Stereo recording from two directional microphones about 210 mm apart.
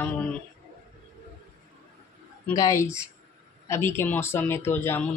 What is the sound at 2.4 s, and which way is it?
Speech, 15° left (ahead or behind).